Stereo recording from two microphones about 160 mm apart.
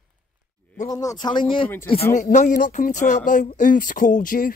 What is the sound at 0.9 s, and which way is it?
Speech, 20° left (ahead or behind).